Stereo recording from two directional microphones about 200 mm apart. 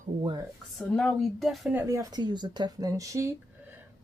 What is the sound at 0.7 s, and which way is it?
Speech, centre (ahead or behind).